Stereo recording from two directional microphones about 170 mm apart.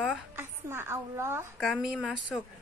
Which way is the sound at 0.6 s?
15° right (ahead or behind).